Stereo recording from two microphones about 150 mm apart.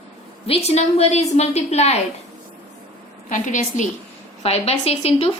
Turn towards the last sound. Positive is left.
turn(degrees=45)  # may be behind; listen again after turning